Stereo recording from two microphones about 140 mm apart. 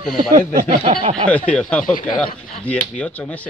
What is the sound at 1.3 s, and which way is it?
Speech, 10° left (ahead or behind).